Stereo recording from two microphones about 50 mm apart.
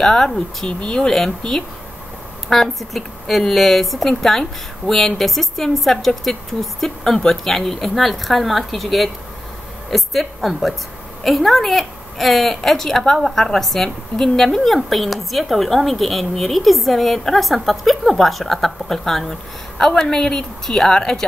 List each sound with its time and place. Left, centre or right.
0.0 s a woman's voice: centre
0.7 s speech: centre
1.1 s a woman's voice: centre